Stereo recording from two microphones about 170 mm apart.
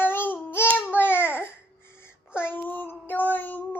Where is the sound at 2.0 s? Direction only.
15° left (ahead or behind).